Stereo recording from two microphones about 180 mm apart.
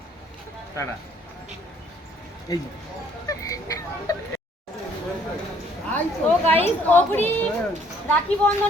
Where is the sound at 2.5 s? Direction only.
20° left (ahead or behind).